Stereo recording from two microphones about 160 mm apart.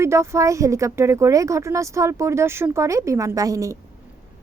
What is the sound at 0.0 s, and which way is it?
A woman's voice, 15° right (ahead or behind).